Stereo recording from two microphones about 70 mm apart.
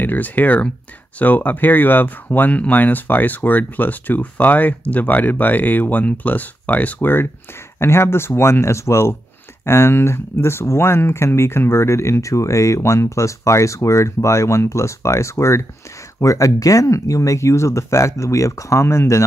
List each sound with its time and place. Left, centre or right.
0.0 s speech: left